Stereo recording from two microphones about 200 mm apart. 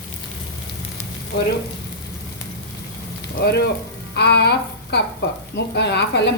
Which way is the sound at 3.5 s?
55° left (ahead or behind).